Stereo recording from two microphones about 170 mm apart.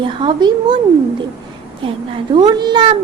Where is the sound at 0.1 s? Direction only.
30° right (ahead or behind).